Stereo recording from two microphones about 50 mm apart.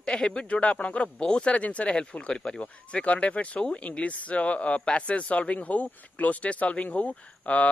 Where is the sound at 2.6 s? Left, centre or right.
Left.